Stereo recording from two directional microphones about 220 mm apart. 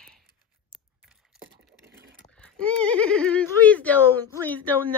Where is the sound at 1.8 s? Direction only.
50° right (ahead or behind).